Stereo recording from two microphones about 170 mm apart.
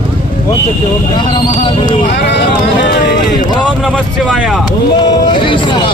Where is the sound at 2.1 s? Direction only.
80° left.